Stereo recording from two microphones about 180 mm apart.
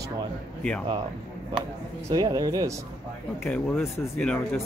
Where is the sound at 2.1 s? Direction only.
20° right (ahead or behind).